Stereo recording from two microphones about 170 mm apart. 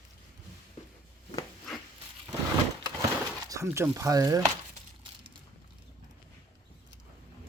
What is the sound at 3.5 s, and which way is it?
Speech, 15° right (ahead or behind).